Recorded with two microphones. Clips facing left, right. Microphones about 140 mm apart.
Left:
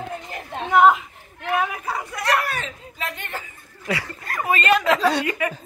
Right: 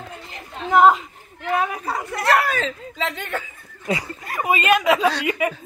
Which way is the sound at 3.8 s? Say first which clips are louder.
Right 2 dB; 20° right (ahead or behind).